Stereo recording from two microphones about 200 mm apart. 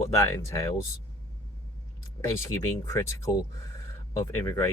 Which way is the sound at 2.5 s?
15° left (ahead or behind).